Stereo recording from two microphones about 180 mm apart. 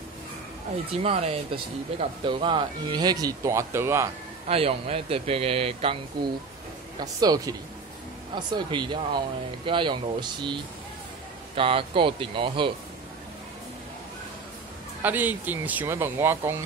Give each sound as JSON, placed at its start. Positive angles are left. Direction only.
{"t": 0.9, "sound": "speech", "side_deg": -35}
{"t": 4.5, "sound": "a man's voice", "side_deg": -35}
{"t": 7.0, "sound": "speech", "side_deg": -20}
{"t": 8.5, "sound": "speech", "side_deg": -25}
{"t": 15.0, "sound": "speech", "side_deg": -10}